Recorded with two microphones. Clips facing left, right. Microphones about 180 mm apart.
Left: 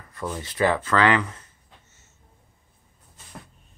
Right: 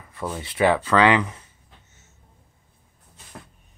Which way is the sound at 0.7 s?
15° right (ahead or behind).